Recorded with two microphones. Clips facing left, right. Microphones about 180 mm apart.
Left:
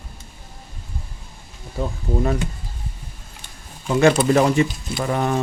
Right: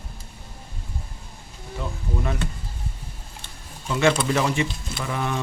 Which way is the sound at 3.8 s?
35° left (ahead or behind).